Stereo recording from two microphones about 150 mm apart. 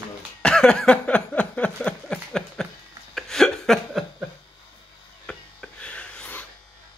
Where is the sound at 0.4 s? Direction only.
5° left (ahead or behind).